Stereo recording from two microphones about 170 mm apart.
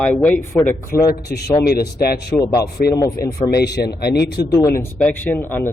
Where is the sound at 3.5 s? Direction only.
75° left (ahead or behind).